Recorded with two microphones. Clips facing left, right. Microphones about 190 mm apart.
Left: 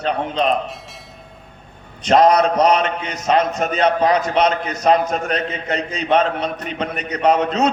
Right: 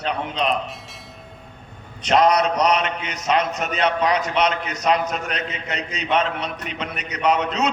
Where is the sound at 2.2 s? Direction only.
50° left (ahead or behind).